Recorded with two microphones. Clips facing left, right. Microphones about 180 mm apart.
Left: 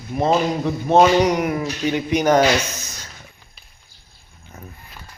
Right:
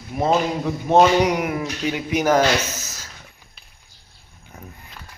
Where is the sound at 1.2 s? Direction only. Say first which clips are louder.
Left 2 dB; 10° right (ahead or behind).